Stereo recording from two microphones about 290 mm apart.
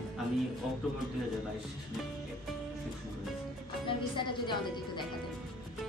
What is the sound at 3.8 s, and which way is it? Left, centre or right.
Speech, centre.